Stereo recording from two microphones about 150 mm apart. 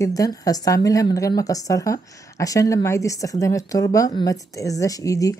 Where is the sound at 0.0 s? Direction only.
25° left (ahead or behind).